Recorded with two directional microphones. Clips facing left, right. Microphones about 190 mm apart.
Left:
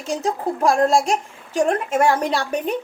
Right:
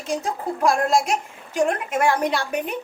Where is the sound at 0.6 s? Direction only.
35° left (ahead or behind).